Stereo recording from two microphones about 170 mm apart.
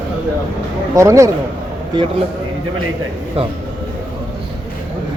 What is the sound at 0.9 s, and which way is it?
Speech, 15° right (ahead or behind).